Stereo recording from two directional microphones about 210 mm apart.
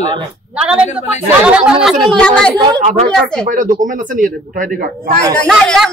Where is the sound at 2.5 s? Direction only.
20° right (ahead or behind).